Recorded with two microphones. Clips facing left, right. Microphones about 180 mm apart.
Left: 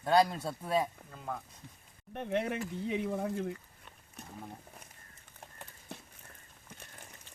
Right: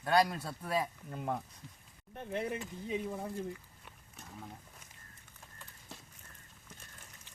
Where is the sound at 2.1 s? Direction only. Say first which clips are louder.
Left 4 dB; 65° left (ahead or behind).